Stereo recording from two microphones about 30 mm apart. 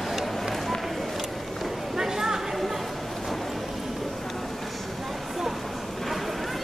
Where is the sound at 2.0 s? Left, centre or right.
Centre.